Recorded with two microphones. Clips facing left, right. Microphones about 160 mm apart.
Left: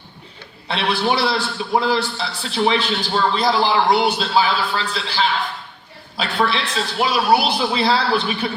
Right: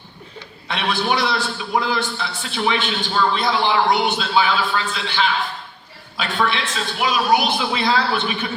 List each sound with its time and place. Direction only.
0.7 s a man's voice: 30° left (ahead or behind)